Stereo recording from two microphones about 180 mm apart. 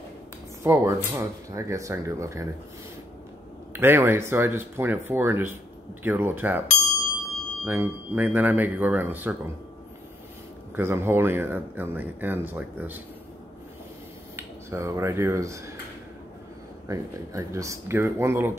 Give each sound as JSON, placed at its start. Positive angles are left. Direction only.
{"t": 0.7, "sound": "speech", "side_deg": -15}
{"t": 3.8, "sound": "speech", "side_deg": -10}
{"t": 7.6, "sound": "speech", "side_deg": -10}
{"t": 10.8, "sound": "speech", "side_deg": -15}
{"t": 14.3, "sound": "speech", "side_deg": -15}
{"t": 16.8, "sound": "speech", "side_deg": -15}